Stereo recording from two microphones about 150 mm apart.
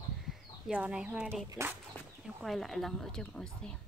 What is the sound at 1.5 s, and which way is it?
Speech, 20° right (ahead or behind).